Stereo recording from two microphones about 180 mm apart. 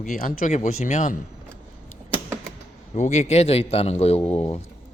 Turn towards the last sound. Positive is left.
turn(degrees=35)  # may be behind; listen again after turning